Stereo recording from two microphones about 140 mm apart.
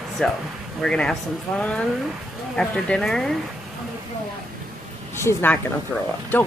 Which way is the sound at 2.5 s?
5° left (ahead or behind).